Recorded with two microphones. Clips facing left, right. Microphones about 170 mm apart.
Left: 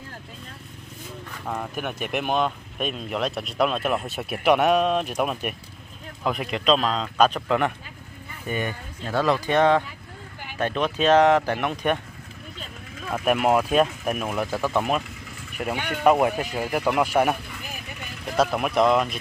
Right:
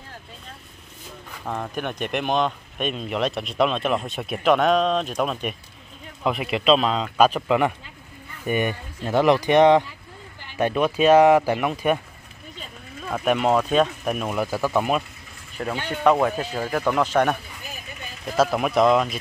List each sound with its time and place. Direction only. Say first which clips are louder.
1.4 s speech: right 2 dB; centre (ahead or behind)
6.2 s speech: right 3 dB; 5° right (ahead or behind)
8.5 s speech: right 5 dB; 15° right (ahead or behind)
13.1 s speech: even; 5° left (ahead or behind)
15.5 s speech: even; 15° left (ahead or behind)
18.3 s speech: right 2 dB; centre (ahead or behind)